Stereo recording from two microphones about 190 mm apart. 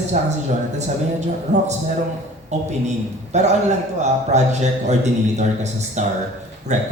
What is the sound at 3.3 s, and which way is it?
A woman's voice, 35° right (ahead or behind).